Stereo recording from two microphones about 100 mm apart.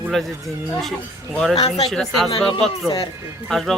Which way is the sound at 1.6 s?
90° left.